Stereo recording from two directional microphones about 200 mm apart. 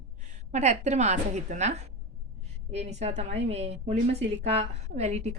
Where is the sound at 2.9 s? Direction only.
35° right (ahead or behind).